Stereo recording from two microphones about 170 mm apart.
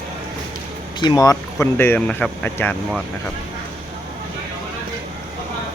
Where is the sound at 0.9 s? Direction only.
25° left (ahead or behind).